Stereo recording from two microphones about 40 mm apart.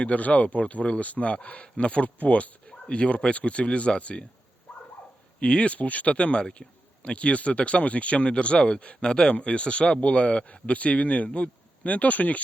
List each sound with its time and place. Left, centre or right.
0.0 s speech: left
5.4 s speech: left